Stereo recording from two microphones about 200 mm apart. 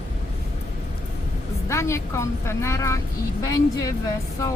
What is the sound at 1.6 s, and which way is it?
A woman's voice, 15° left (ahead or behind).